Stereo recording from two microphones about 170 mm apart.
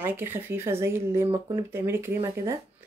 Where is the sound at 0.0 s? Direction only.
10° right (ahead or behind).